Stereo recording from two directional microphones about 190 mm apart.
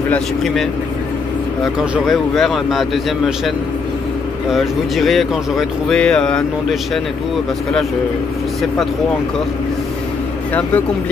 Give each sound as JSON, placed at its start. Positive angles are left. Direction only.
{"t": 0.1, "sound": "speech", "side_deg": 0}
{"t": 2.0, "sound": "speech", "side_deg": 0}